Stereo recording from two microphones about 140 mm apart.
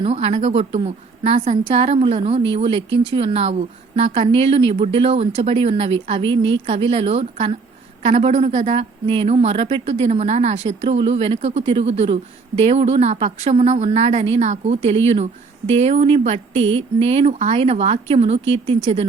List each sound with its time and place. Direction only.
0.0 s speech: 45° right (ahead or behind)